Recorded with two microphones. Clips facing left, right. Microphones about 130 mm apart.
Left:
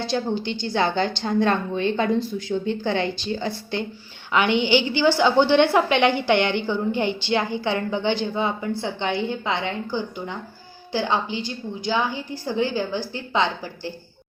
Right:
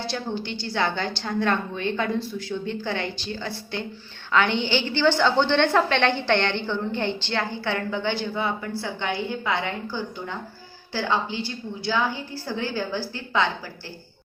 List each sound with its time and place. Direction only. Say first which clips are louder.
0.1 s a woman's voice: left 5 dB; 20° left (ahead or behind)